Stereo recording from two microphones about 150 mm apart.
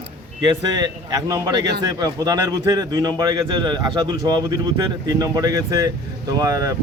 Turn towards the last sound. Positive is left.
turn(degrees=-25)  # may be behind; listen again after turning